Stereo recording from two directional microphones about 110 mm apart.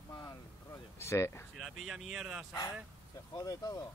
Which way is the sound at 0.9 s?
25° left (ahead or behind).